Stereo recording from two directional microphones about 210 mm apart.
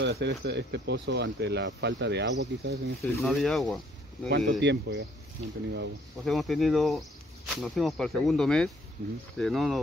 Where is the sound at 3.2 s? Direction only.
Centre (ahead or behind).